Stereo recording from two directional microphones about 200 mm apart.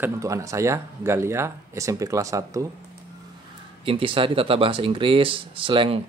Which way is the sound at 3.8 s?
25° right (ahead or behind).